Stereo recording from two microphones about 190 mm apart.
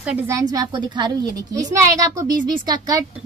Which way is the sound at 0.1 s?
15° right (ahead or behind).